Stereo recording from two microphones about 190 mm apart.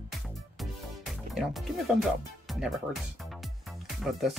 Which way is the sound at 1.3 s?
Centre (ahead or behind).